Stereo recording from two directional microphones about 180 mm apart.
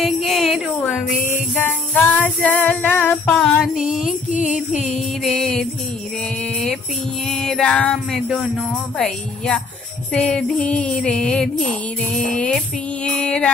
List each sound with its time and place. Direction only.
0.0 s a sound: centre (ahead or behind)
1.3 s music: 10° left (ahead or behind)
4.3 s music: 45° left (ahead or behind)
4.9 s music: centre (ahead or behind)
6.4 s mantra: 5° left (ahead or behind)
7.2 s music: centre (ahead or behind)